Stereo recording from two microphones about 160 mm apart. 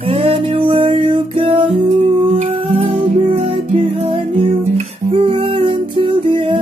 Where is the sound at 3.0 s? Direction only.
40° right (ahead or behind).